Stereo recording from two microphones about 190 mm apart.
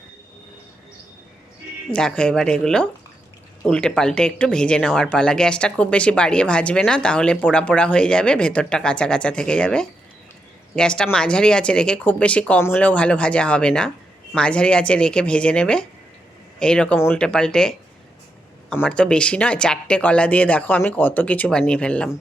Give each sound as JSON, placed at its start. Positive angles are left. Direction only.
{"t": 1.9, "sound": "speech", "side_deg": 5}